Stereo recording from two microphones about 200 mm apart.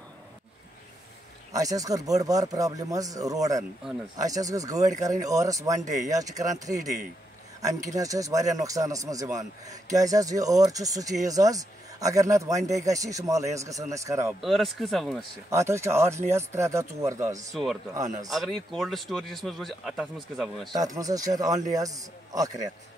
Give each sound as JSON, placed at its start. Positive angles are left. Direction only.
{"t": 1.5, "sound": "speech", "side_deg": -15}
{"t": 14.4, "sound": "speech", "side_deg": 0}
{"t": 15.5, "sound": "speech", "side_deg": -15}
{"t": 17.5, "sound": "speech", "side_deg": 0}
{"t": 20.7, "sound": "speech", "side_deg": -20}